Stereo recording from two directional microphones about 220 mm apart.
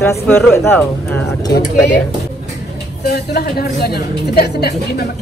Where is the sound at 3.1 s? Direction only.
45° left (ahead or behind).